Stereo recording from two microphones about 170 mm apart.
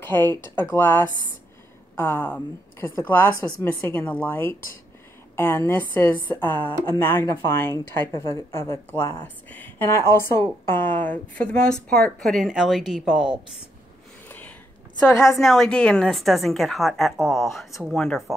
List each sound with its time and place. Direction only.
0.3 s a woman's voice: 15° left (ahead or behind); by 13.3 s 5° right (ahead or behind)
15.3 s a woman's voice: centre (ahead or behind)